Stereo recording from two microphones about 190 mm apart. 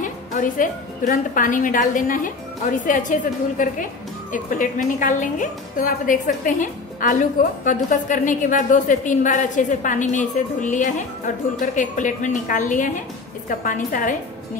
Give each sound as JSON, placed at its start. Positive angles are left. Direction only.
{"t": 0.0, "sound": "a woman's voice", "side_deg": 45}